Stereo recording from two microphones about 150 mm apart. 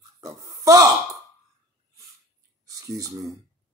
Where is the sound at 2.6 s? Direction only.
20° right (ahead or behind).